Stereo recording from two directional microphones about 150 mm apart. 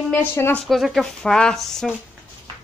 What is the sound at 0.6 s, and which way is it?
Speech, centre (ahead or behind).